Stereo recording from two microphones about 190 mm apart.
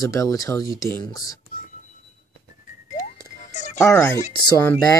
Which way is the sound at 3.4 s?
40° left (ahead or behind).